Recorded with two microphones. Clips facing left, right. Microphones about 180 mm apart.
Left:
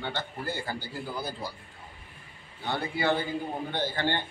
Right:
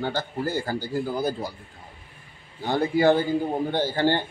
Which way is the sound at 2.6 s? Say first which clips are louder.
Right 9 dB; 40° right (ahead or behind).